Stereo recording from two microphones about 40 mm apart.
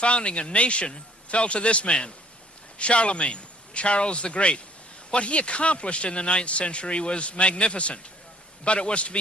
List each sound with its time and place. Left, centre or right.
0.0 s speech: left